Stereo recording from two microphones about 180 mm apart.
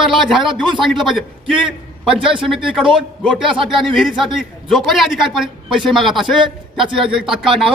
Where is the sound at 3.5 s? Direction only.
25° right (ahead or behind).